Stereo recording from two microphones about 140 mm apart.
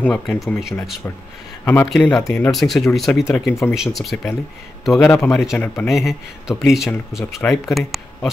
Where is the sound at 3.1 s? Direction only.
10° left (ahead or behind).